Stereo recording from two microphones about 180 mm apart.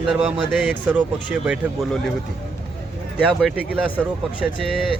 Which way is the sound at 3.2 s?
5° right (ahead or behind).